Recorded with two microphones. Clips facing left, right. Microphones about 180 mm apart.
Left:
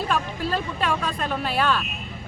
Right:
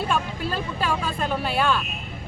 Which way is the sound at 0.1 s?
Centre (ahead or behind).